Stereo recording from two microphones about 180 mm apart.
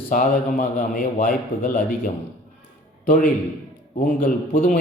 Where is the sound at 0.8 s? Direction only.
50° left (ahead or behind).